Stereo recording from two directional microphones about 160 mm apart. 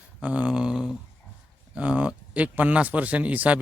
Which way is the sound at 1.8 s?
10° right (ahead or behind).